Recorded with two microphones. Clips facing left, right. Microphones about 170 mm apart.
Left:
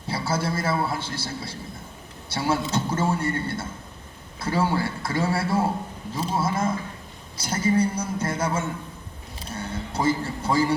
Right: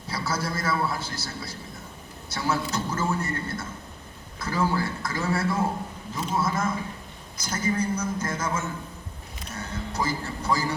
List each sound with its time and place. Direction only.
0.1 s a man's voice: 25° left (ahead or behind)
9.4 s music: 30° left (ahead or behind)